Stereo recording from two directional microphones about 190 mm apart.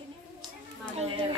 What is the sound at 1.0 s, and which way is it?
Speech, 30° right (ahead or behind).